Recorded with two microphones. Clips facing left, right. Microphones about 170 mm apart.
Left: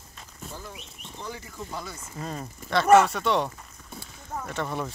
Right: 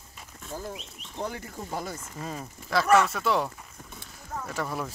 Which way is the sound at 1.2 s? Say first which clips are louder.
Right 4 dB; 55° right (ahead or behind).